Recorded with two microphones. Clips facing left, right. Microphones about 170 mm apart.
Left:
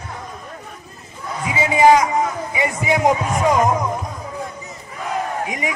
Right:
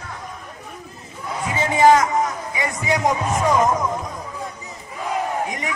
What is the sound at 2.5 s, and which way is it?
A man's voice, 15° left (ahead or behind).